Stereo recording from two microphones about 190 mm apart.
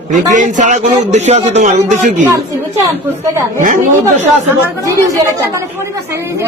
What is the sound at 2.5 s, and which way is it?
A woman's voice, 15° right (ahead or behind).